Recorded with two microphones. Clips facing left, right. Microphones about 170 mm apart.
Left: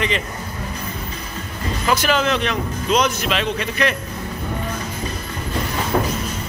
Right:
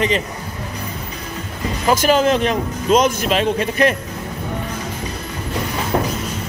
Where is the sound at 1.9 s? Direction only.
40° right (ahead or behind).